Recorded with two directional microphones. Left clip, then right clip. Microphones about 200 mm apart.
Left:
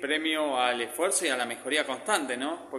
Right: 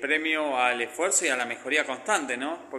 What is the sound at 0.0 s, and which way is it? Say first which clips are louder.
Speech: right 2 dB; 10° left (ahead or behind).